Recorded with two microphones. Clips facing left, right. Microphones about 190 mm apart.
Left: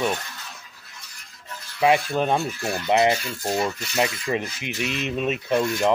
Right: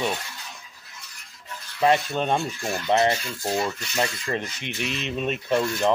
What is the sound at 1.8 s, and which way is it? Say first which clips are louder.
Speech: left 1 dB; 5° left (ahead or behind).